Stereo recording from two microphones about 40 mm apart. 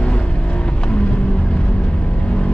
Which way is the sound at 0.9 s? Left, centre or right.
Left.